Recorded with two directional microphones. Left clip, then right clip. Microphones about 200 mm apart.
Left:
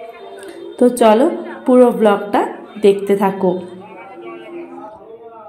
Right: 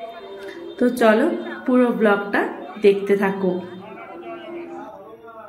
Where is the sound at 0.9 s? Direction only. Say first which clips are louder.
Left 3 dB; 20° left (ahead or behind).